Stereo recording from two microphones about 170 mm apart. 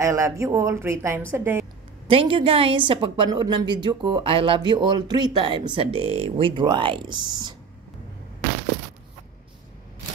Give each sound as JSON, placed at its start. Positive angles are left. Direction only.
{"t": 0.0, "sound": "a woman's voice", "side_deg": -15}
{"t": 2.0, "sound": "a woman's voice", "side_deg": -30}